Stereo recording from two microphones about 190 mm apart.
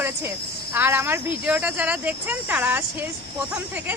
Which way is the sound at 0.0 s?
10° right (ahead or behind).